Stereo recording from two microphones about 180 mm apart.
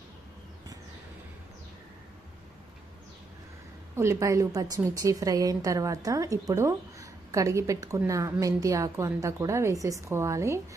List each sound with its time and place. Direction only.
3.9 s a woman's voice: 15° right (ahead or behind)